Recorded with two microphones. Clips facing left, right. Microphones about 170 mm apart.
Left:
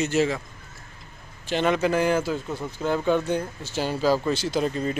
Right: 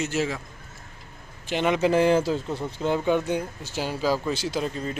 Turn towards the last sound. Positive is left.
turn(degrees=-10)  # may be behind; listen again after turning